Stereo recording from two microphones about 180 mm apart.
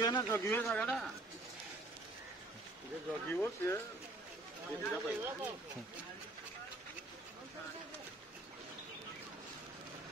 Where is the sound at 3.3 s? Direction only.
10° left (ahead or behind).